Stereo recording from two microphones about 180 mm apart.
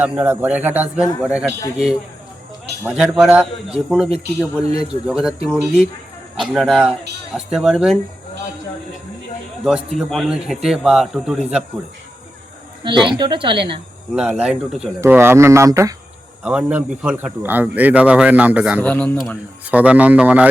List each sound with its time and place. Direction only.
0.0 s a man's voice: 10° right (ahead or behind)
2.8 s a man's voice: 5° right (ahead or behind)
9.6 s a man's voice: centre (ahead or behind)
12.8 s speech: 25° right (ahead or behind)
14.2 s a man's voice: 10° right (ahead or behind)
15.0 s speech: 15° right (ahead or behind)
16.4 s speech: 5° right (ahead or behind)
18.8 s speech: 10° left (ahead or behind); by 20.5 s 10° right (ahead or behind)